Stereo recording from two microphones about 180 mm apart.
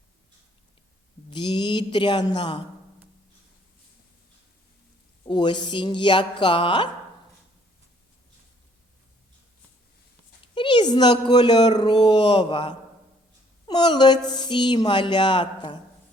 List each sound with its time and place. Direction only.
1.3 s speech: 25° left (ahead or behind)
5.2 s speech: 25° left (ahead or behind)
10.4 s speech: 25° left (ahead or behind)